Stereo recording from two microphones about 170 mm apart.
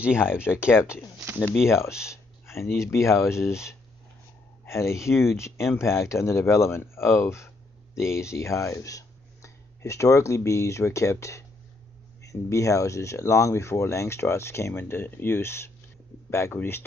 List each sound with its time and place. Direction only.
0.0 s speech: 5° right (ahead or behind)
1.4 s speech: 15° left (ahead or behind)